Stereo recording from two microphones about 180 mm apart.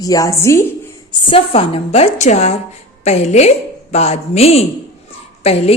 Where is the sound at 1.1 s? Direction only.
30° left (ahead or behind).